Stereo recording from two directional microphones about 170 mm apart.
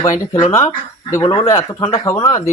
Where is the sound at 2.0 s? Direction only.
20° left (ahead or behind).